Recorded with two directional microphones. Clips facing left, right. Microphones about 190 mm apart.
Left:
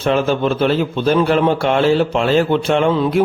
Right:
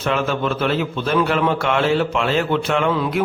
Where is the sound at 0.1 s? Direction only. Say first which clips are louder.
Left 5 dB; 30° left (ahead or behind).